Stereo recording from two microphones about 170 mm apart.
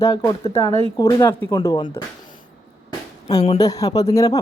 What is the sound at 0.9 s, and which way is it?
Speech, 20° left (ahead or behind).